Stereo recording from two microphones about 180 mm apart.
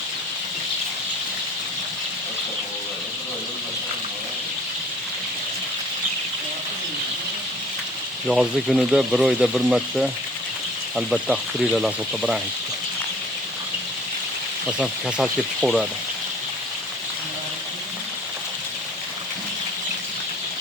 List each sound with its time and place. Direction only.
8.3 s speech: 5° right (ahead or behind)
14.8 s speech: centre (ahead or behind)